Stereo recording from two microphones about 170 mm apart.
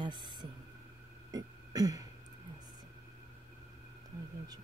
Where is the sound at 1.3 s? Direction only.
20° right (ahead or behind).